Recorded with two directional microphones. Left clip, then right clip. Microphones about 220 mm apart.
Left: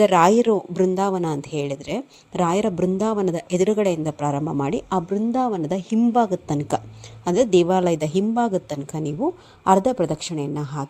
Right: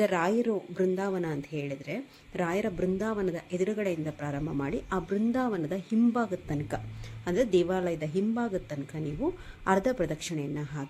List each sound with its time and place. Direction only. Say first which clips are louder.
0.0 s speech: left 12 dB; 30° left (ahead or behind)